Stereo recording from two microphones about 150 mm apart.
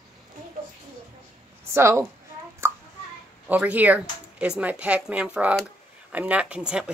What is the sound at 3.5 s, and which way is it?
Speech, 10° right (ahead or behind).